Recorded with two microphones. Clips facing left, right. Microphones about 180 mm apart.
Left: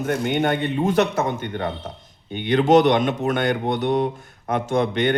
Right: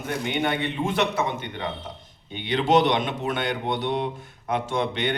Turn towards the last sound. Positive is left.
turn(degrees=45)  # may be behind; listen again after turning